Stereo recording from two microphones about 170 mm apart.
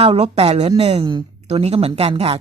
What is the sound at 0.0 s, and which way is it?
Speech, 35° right (ahead or behind).